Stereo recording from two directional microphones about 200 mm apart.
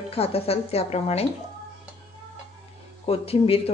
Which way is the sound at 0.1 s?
30° left (ahead or behind).